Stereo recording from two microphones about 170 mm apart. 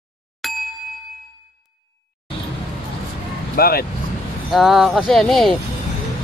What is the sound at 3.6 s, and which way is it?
Speech, 60° left (ahead or behind).